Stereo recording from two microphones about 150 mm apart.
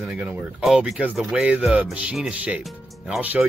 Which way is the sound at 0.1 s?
5° right (ahead or behind).